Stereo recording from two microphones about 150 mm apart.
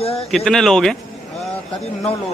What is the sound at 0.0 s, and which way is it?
Speech, 40° left (ahead or behind).